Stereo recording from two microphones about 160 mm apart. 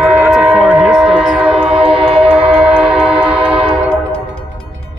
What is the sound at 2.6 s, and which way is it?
Train, 5° right (ahead or behind).